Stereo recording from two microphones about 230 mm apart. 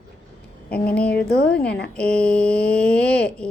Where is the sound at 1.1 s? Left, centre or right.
Left.